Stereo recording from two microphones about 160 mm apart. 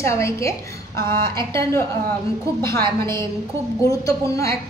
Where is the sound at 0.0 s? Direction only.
20° left (ahead or behind).